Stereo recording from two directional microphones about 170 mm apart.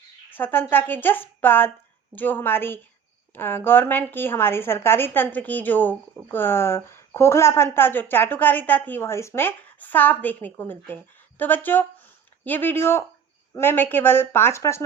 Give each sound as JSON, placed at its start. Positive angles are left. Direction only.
{"t": 0.3, "sound": "a woman's voice", "side_deg": 10}